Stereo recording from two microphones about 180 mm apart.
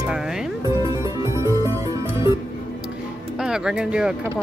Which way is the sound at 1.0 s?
15° right (ahead or behind).